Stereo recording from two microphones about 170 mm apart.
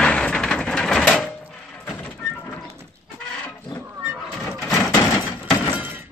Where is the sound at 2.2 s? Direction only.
15° left (ahead or behind).